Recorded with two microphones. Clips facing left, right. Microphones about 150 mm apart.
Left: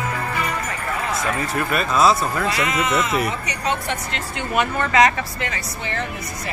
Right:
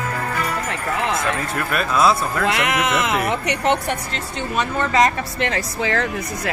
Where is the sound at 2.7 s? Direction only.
75° right (ahead or behind).